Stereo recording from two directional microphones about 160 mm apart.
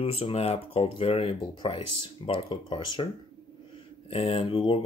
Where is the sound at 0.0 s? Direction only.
40° left (ahead or behind).